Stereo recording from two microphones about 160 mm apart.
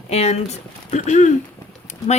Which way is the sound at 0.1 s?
40° left (ahead or behind).